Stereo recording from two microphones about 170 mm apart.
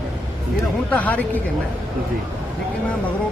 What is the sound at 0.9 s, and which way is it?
Speech, 10° left (ahead or behind).